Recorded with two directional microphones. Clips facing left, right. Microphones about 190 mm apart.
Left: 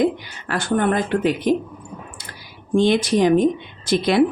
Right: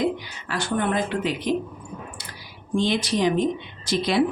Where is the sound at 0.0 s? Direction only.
55° left (ahead or behind).